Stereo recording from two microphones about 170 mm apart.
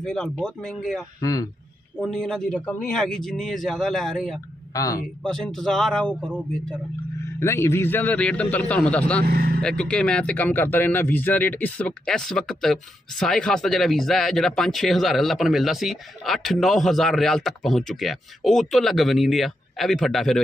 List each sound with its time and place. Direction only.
0.0 s speech: 5° left (ahead or behind)
1.2 s a man's voice: 20° left (ahead or behind)
2.0 s speech: 5° left (ahead or behind)
4.7 s a man's voice: 20° left (ahead or behind)
5.2 s speech: 5° left (ahead or behind)
7.3 s a man's voice: 15° left (ahead or behind)
9.2 s speech: 65° right (ahead or behind)
9.6 s speech: 5° left (ahead or behind)